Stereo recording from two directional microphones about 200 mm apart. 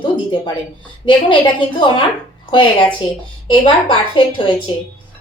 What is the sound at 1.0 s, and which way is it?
A woman's voice, 25° left (ahead or behind).